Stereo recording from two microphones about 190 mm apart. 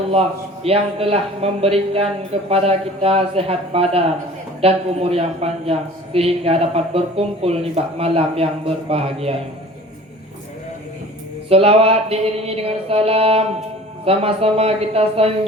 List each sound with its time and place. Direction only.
0.1 s a man's voice: 30° right (ahead or behind)
11.4 s a man's voice: 30° right (ahead or behind)